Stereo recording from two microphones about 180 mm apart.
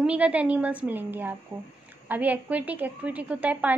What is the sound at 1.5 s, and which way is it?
Speech, 30° right (ahead or behind).